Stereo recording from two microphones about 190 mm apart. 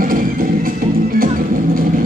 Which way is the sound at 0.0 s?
50° right (ahead or behind).